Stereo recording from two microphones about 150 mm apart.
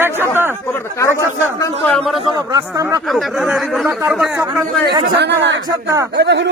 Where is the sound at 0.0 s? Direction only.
15° right (ahead or behind).